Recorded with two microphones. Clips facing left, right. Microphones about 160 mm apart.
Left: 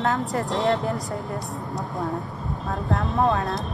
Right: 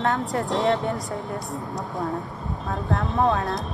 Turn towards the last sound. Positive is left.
turn(degrees=0)  # may be behind; listen again after turning